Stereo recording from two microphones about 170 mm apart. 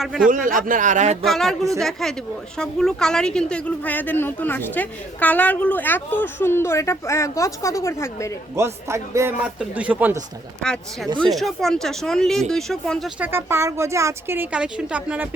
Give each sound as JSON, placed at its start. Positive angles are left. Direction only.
{"t": 0.0, "sound": "speech", "side_deg": 0}
{"t": 0.3, "sound": "speech", "side_deg": -55}
{"t": 1.2, "sound": "speech", "side_deg": 0}
{"t": 8.5, "sound": "speech", "side_deg": -15}
{"t": 10.6, "sound": "speech", "side_deg": 5}
{"t": 13.1, "sound": "speech", "side_deg": -10}